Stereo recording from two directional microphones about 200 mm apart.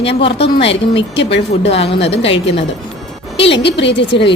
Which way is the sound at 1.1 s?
60° left (ahead or behind).